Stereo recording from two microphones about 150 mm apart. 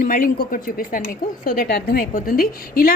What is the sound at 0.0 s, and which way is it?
A woman's voice, 70° left (ahead or behind).